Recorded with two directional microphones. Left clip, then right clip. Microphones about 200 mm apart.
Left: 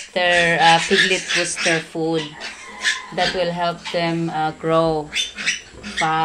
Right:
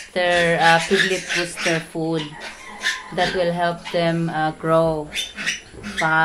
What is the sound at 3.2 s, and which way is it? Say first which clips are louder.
Speech: right 2 dB; 20° right (ahead or behind).